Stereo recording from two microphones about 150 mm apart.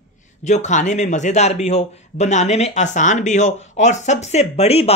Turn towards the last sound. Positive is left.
turn(degrees=45)  # may be behind; listen again after turning